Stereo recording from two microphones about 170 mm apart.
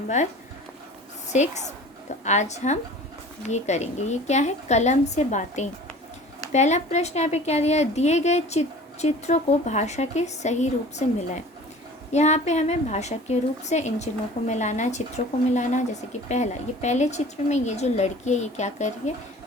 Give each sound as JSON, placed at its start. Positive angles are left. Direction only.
{"t": 1.3, "sound": "a woman's voice", "side_deg": 45}